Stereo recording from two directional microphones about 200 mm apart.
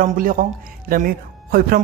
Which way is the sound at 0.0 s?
45° right (ahead or behind).